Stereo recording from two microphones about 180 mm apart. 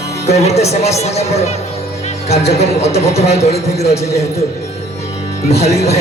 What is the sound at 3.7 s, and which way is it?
Speech, 15° left (ahead or behind).